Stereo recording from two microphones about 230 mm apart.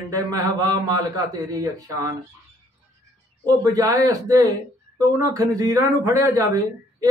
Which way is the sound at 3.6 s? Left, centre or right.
Centre.